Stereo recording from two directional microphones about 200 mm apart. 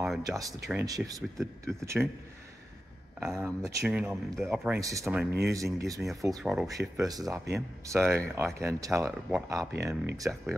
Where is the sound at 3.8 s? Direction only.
5° right (ahead or behind).